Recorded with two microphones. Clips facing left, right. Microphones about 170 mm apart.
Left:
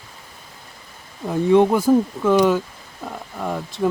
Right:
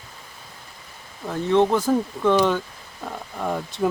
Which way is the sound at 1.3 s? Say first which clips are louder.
Left 4 dB; 15° left (ahead or behind).